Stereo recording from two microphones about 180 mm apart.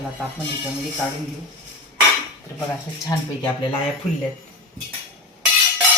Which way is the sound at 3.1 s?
25° left (ahead or behind).